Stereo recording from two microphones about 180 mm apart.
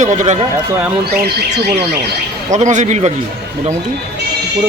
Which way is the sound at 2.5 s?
40° right (ahead or behind).